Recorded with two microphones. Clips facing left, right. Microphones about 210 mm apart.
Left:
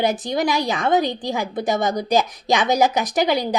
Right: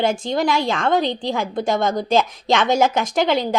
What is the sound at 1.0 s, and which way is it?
Speech, 45° left (ahead or behind).